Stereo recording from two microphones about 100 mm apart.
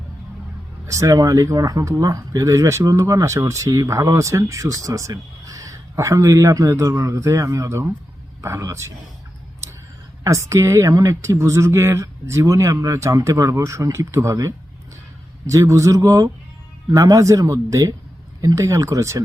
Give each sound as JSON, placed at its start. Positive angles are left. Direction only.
{"t": 0.9, "sound": "speech", "side_deg": -35}
{"t": 10.2, "sound": "speech", "side_deg": -30}